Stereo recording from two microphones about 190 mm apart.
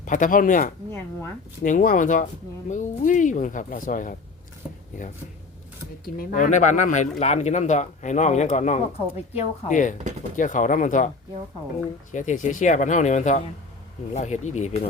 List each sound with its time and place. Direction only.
0.0 s speech: 45° left (ahead or behind)
6.1 s speech: 45° left (ahead or behind)
12.1 s speech: 40° left (ahead or behind)